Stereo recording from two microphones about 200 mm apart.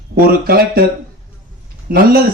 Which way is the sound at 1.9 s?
45° right (ahead or behind).